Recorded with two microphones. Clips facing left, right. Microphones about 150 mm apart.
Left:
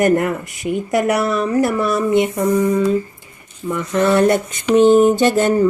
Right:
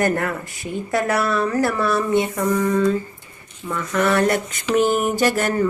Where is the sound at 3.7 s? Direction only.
25° left (ahead or behind).